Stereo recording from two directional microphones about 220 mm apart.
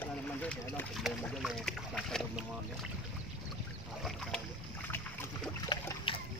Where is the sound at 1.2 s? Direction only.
Centre (ahead or behind).